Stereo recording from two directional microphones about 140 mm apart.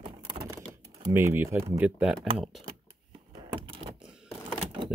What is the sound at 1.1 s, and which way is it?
Speech, 15° right (ahead or behind).